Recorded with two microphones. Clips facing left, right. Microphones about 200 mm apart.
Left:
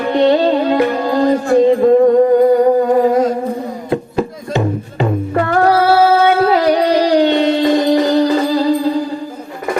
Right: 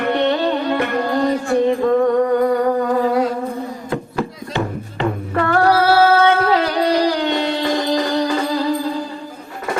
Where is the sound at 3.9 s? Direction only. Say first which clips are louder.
Left 7 dB; 20° left (ahead or behind).